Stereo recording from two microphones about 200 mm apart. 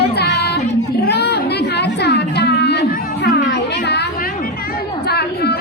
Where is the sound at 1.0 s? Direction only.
55° left (ahead or behind).